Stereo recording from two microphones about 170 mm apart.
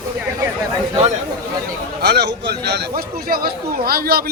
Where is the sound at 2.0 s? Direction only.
75° right (ahead or behind).